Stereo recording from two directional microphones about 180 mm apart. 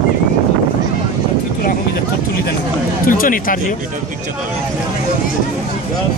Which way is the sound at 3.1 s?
50° left (ahead or behind).